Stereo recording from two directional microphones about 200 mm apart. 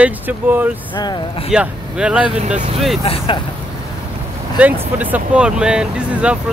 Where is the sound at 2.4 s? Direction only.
35° right (ahead or behind).